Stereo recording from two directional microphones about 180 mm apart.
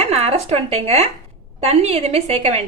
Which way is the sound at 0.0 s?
35° right (ahead or behind).